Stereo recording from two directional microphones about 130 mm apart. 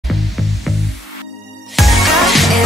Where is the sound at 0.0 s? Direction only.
Centre (ahead or behind).